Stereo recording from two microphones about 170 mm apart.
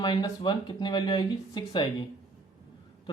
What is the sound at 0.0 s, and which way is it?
Speech, 25° left (ahead or behind).